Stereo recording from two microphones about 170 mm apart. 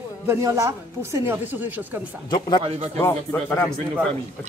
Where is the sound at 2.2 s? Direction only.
25° left (ahead or behind).